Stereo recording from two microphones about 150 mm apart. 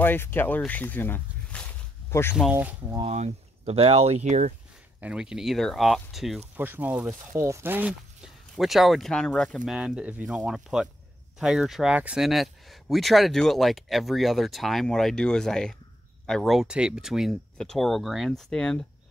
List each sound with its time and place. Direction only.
0.0 s speech: 15° left (ahead or behind)
0.6 s zipper: 10° left (ahead or behind)
2.5 s speech: 10° right (ahead or behind)
3.1 s speech: 45° right (ahead or behind)
5.0 s speech: 5° right (ahead or behind)
6.5 s speech: 15° right (ahead or behind)
7.3 s speech: 20° right (ahead or behind); by 9.6 s 5° left (ahead or behind)
9.7 s speech: 5° right (ahead or behind)